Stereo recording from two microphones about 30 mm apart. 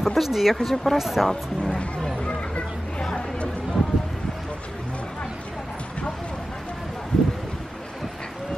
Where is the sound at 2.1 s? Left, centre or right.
Left.